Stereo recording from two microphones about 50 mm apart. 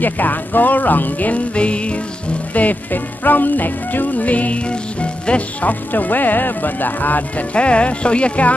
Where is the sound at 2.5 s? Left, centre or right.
Left.